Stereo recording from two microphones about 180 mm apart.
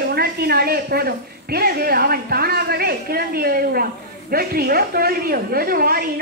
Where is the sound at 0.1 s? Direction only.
60° right (ahead or behind).